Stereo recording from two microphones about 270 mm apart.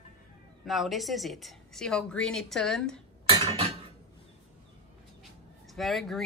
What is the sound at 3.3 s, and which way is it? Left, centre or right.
Cutlery, right.